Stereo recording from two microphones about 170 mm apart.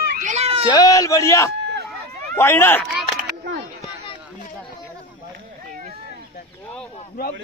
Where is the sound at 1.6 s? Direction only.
90° right.